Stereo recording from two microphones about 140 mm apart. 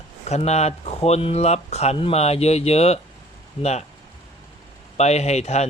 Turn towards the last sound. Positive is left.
turn(degrees=50)  # may be behind; listen again after turning